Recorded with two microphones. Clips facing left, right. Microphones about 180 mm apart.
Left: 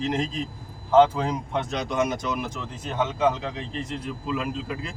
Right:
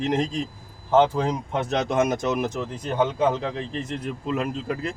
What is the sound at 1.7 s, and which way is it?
Speech, 50° right (ahead or behind).